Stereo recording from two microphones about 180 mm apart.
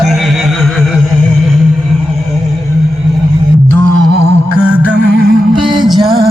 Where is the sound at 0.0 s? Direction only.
Centre (ahead or behind).